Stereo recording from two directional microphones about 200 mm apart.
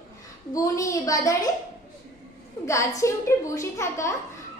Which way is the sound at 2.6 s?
15° left (ahead or behind).